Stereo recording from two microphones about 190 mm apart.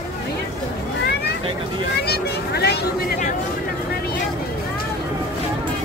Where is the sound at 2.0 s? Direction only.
55° left (ahead or behind).